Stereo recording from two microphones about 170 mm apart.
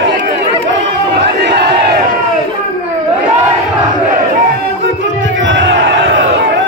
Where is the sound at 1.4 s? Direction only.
75° right (ahead or behind).